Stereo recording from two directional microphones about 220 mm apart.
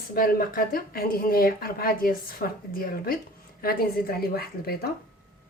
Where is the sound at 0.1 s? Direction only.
40° left (ahead or behind).